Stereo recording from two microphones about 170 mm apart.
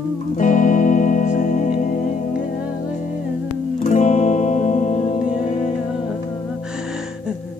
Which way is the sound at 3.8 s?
45° left (ahead or behind).